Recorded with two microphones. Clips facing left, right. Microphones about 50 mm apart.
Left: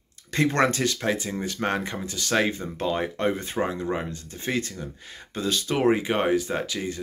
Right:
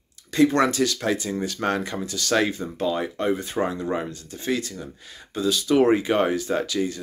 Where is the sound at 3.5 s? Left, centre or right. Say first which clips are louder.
Right 2 dB; left.